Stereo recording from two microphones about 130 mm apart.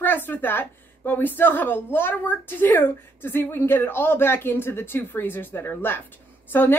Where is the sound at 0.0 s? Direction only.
15° left (ahead or behind).